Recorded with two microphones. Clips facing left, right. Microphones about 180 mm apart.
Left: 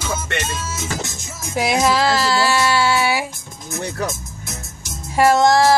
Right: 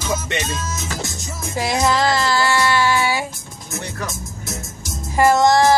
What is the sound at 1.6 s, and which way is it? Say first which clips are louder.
Music: left 1 dB; 10° left (ahead or behind).